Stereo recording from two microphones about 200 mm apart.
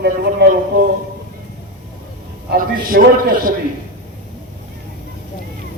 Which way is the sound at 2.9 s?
45° right (ahead or behind).